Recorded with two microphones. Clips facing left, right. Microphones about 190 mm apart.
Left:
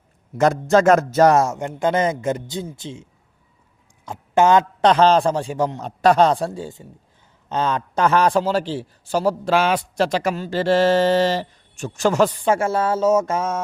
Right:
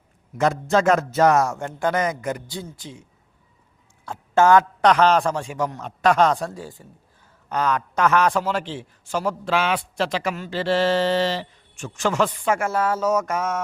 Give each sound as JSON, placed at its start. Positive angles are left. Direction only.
{"t": 0.3, "sound": "speech", "side_deg": 45}
{"t": 1.4, "sound": "a man's voice", "side_deg": 20}